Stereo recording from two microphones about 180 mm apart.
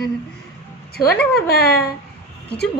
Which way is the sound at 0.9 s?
60° left (ahead or behind).